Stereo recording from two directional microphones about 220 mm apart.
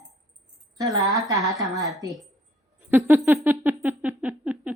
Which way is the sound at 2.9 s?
10° right (ahead or behind).